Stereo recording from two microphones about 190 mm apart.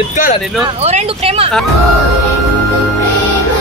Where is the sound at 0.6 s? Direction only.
35° right (ahead or behind).